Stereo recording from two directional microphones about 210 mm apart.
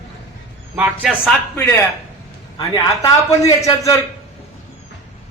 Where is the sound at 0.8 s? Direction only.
Centre (ahead or behind); by 3.5 s 15° left (ahead or behind).